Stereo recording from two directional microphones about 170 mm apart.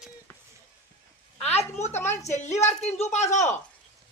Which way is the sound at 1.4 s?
40° left (ahead or behind).